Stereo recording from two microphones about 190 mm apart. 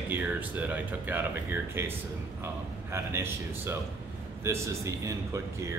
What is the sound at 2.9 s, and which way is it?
Speech, 15° right (ahead or behind).